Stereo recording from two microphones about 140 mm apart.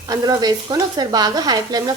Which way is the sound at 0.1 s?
30° right (ahead or behind).